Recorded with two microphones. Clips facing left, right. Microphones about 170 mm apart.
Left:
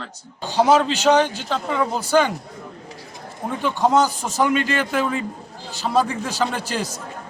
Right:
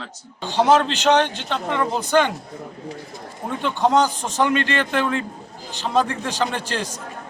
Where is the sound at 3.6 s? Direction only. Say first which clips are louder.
Even; 5° left (ahead or behind).